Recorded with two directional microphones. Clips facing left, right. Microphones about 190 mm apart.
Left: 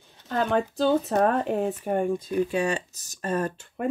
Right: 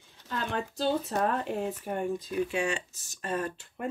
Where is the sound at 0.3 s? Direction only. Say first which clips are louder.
Left 9 dB; 50° left (ahead or behind).